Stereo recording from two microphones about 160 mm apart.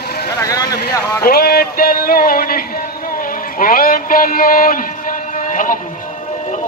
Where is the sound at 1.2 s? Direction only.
70° left (ahead or behind).